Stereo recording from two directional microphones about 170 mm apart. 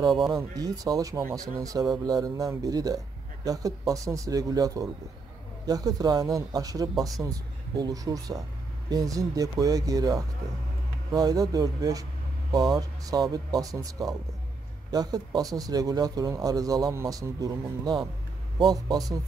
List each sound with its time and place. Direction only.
0.1 s speech: centre (ahead or behind)
0.4 s a man's voice: 20° right (ahead or behind)